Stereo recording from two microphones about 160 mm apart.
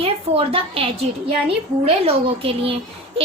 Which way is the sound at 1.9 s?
35° right (ahead or behind).